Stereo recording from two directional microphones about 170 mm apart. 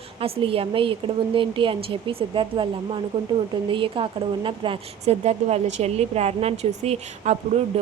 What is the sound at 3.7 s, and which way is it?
A woman's voice, 30° right (ahead or behind).